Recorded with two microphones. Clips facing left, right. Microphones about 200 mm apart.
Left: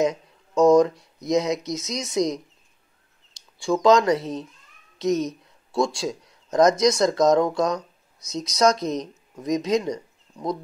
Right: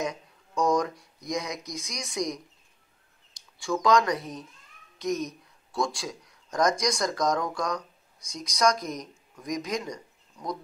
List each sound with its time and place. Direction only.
0.0 s speech: 25° left (ahead or behind)
3.6 s speech: 25° left (ahead or behind)
5.7 s speech: 25° left (ahead or behind)